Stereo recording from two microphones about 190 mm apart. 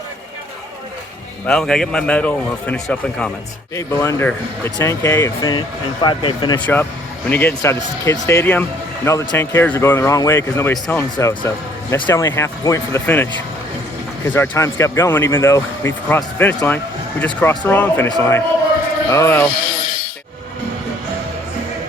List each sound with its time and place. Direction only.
1.5 s a man's voice: 5° left (ahead or behind)
3.8 s speech: 15° left (ahead or behind)
7.3 s speech: 10° left (ahead or behind)
14.3 s speech: 10° left (ahead or behind)